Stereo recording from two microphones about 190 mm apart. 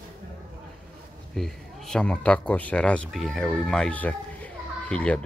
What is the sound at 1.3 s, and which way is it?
Speech, centre (ahead or behind).